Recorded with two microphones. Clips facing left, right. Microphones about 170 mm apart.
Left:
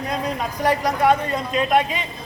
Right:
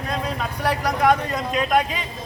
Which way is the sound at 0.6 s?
10° left (ahead or behind).